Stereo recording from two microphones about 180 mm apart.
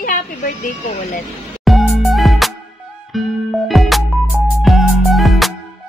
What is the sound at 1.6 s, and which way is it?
Music, centre (ahead or behind).